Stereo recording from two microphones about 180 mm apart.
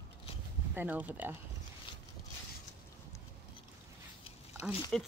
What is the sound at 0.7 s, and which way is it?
Speech, 10° right (ahead or behind).